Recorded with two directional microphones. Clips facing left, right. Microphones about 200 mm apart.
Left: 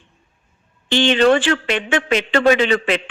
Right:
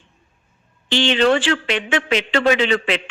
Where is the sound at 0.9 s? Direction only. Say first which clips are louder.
Left 2 dB; 50° left (ahead or behind).